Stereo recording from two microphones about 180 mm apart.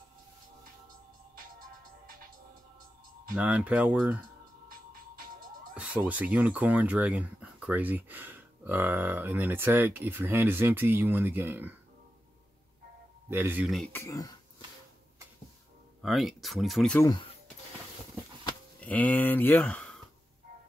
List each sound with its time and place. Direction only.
3.3 s speech: 10° right (ahead or behind)
5.8 s speech: 10° right (ahead or behind)
13.3 s speech: 10° right (ahead or behind)
13.9 s speech: 20° left (ahead or behind)
16.0 s speech: centre (ahead or behind)
17.0 s speech: 25° left (ahead or behind)
18.8 s speech: 10° left (ahead or behind)